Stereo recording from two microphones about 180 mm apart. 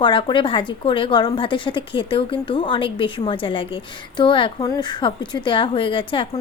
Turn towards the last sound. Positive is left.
turn(degrees=30)  # may be behind; listen again after turning